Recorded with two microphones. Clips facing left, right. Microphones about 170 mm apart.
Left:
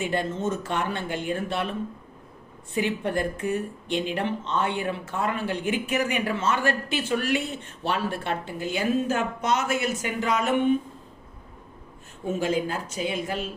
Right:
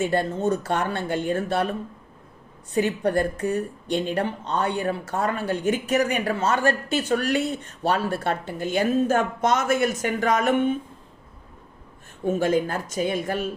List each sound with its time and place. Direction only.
0.1 s a woman's voice: 35° right (ahead or behind)
2.7 s a woman's voice: 40° right (ahead or behind)
12.3 s speech: 50° right (ahead or behind)